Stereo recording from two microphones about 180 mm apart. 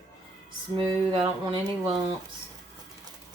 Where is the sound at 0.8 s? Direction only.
30° right (ahead or behind).